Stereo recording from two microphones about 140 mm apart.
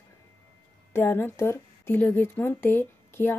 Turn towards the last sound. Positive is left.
turn(degrees=15)  # may be behind; listen again after turning